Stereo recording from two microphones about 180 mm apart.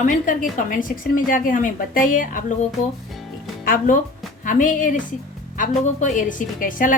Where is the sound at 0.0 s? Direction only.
45° left (ahead or behind).